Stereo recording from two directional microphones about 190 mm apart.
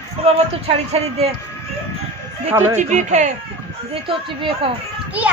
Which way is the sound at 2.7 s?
40° right (ahead or behind).